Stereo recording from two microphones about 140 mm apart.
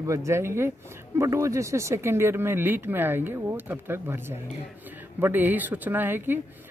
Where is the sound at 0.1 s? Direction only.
20° right (ahead or behind).